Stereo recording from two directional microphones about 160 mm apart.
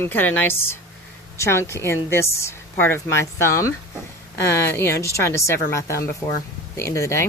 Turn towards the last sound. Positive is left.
turn(degrees=20)  # may be behind; listen again after turning